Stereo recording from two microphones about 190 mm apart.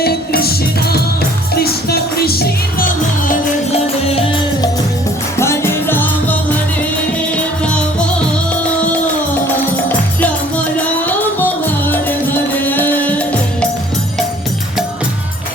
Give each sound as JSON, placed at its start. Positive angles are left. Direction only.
{"t": 0.0, "sound": "music", "side_deg": 55}
{"t": 4.1, "sound": "music", "side_deg": 30}
{"t": 5.4, "sound": "music", "side_deg": 15}
{"t": 10.2, "sound": "music", "side_deg": 10}